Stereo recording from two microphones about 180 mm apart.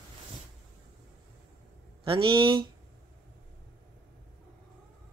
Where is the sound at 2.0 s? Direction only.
30° right (ahead or behind).